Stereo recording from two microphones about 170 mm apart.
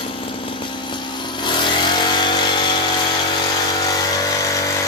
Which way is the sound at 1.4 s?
30° left (ahead or behind).